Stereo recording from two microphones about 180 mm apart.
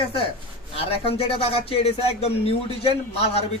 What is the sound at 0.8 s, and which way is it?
Speech, 30° left (ahead or behind).